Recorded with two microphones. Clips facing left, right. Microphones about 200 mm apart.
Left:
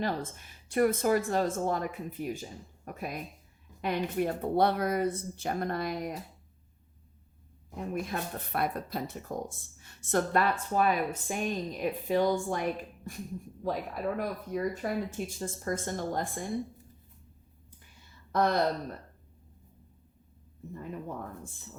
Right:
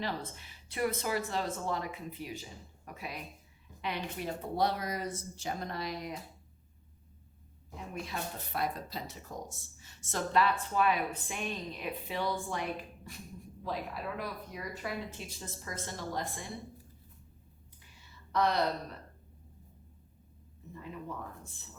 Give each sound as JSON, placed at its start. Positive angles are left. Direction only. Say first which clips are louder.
{"t": 0.0, "sound": "speech", "louder": "left 5 dB", "side_deg": 50}
{"t": 7.8, "sound": "speech", "louder": "left 6 dB", "side_deg": 50}
{"t": 13.7, "sound": "speech", "louder": "left 6 dB", "side_deg": 45}
{"t": 18.3, "sound": "speech", "louder": "left 3 dB", "side_deg": 50}